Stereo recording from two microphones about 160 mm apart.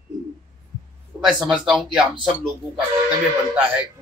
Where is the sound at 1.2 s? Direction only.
Centre (ahead or behind).